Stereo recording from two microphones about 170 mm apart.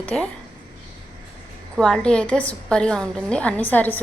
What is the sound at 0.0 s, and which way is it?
Speech, 5° left (ahead or behind).